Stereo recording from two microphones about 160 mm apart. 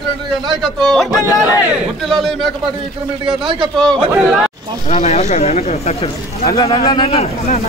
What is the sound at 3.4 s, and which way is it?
Speech, 30° right (ahead or behind).